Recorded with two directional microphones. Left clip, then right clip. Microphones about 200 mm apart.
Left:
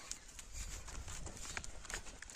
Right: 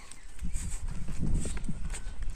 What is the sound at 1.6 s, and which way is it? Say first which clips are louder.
Clip-clop: right 2 dB; 15° left (ahead or behind).